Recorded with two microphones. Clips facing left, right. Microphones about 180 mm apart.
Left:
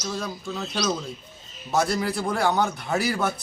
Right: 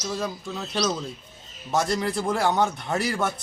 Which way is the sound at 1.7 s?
5° left (ahead or behind).